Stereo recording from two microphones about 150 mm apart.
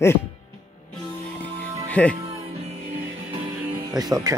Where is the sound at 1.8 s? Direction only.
10° left (ahead or behind).